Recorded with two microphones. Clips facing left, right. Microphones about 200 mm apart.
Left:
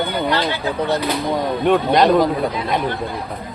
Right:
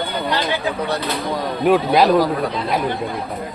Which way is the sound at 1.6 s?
5° right (ahead or behind).